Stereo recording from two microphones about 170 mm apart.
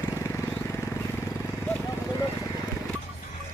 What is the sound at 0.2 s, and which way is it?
Vehicle, 15° left (ahead or behind).